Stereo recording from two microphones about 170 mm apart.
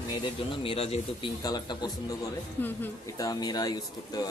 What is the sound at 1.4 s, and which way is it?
A woman's voice, 25° left (ahead or behind).